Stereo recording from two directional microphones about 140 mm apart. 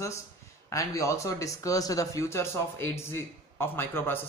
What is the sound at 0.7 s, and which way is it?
Speech, 20° left (ahead or behind).